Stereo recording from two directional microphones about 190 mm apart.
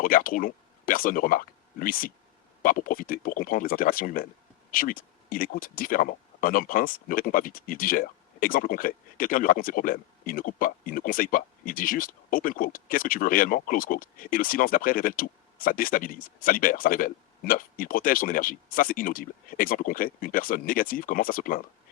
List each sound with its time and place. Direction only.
0.0 s speech: 50° left (ahead or behind)